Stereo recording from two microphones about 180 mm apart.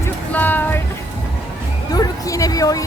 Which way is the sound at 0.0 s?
10° left (ahead or behind).